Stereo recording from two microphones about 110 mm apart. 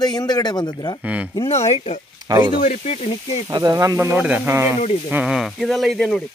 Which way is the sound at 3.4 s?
40° right (ahead or behind).